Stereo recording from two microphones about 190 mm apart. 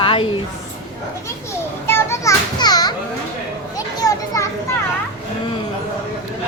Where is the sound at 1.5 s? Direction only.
15° left (ahead or behind).